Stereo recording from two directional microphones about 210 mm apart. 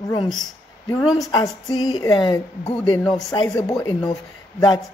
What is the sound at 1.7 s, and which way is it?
Speech, 20° left (ahead or behind).